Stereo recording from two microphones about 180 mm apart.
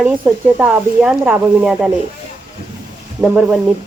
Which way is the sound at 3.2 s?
5° right (ahead or behind).